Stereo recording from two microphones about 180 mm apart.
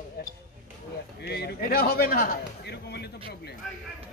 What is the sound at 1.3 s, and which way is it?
Speech, 65° left (ahead or behind).